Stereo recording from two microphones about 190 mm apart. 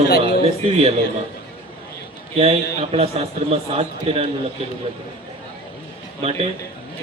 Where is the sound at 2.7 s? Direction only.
30° right (ahead or behind).